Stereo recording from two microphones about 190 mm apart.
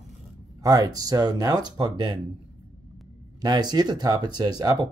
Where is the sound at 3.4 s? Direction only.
20° right (ahead or behind).